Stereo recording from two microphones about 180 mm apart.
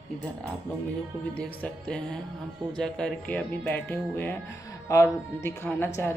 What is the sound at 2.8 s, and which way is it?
Speech, 5° left (ahead or behind).